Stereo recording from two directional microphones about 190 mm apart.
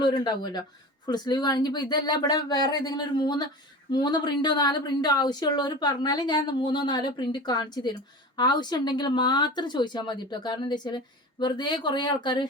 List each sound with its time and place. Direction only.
0.0 s a woman's voice: 25° left (ahead or behind)